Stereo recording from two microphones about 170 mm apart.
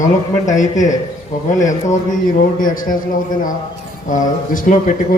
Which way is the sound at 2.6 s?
55° left (ahead or behind).